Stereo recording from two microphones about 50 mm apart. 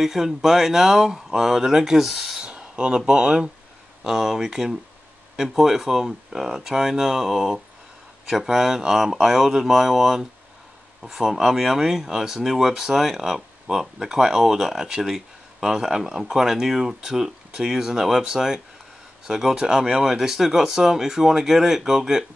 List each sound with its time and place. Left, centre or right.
0.0 s speech: centre
2.4 s a sound: right
3.1 s speech: centre